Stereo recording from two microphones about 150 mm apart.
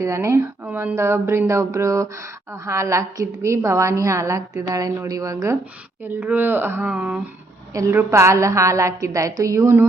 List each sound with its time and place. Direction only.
0.0 s speech: 20° right (ahead or behind)
7.7 s speech: 20° right (ahead or behind)